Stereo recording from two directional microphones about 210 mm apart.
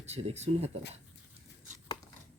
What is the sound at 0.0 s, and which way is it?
Speech, 30° right (ahead or behind).